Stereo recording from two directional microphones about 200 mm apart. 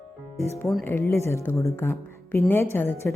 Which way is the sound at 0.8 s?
10° left (ahead or behind).